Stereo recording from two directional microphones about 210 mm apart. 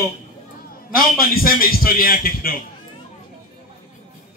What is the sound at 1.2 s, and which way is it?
A man's voice, 45° left (ahead or behind).